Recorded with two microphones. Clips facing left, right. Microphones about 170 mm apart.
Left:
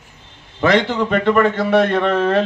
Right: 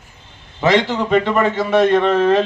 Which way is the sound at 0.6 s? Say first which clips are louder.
Even; 55° left (ahead or behind).